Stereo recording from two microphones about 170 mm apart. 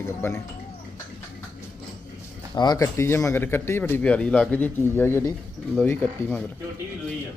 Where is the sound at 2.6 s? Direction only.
20° left (ahead or behind).